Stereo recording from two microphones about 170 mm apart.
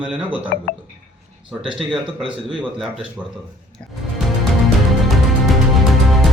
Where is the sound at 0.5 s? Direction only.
65° left (ahead or behind).